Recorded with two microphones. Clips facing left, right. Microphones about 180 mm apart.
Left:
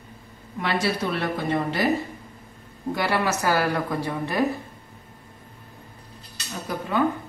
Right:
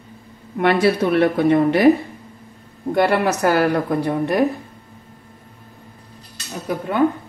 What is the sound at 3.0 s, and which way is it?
A woman's voice, 55° right (ahead or behind).